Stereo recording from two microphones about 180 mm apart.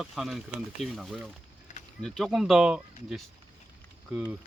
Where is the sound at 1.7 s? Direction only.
40° left (ahead or behind).